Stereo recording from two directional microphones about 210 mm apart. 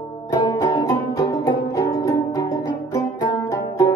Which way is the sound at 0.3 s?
20° left (ahead or behind).